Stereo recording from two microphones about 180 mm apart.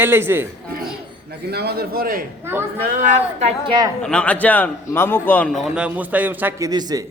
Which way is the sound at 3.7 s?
25° right (ahead or behind).